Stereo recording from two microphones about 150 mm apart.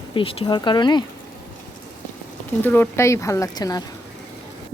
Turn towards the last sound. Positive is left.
turn(degrees=25)  # may be behind; listen again after turning